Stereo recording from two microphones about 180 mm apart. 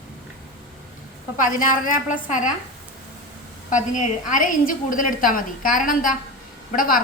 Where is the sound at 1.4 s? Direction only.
45° left (ahead or behind).